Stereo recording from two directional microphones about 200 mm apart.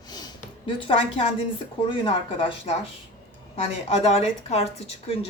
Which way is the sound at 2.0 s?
25° left (ahead or behind).